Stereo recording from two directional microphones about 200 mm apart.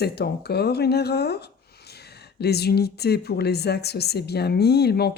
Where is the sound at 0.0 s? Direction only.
55° left (ahead or behind).